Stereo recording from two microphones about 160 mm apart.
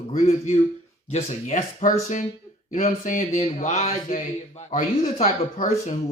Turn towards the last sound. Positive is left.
turn(degrees=50)  # may be behind; listen again after turning